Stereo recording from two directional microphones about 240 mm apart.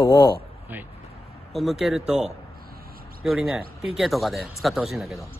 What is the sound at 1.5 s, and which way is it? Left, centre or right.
Speech, centre.